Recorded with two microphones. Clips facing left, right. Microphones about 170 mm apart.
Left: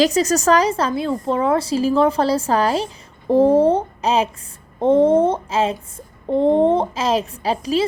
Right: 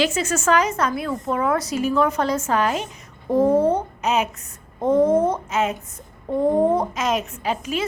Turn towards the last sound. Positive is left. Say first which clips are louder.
# left 5 dB
turn(degrees=35)  # may be behind; listen again after turning